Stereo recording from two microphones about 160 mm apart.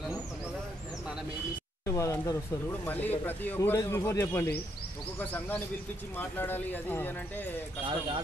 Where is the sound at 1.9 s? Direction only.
20° left (ahead or behind).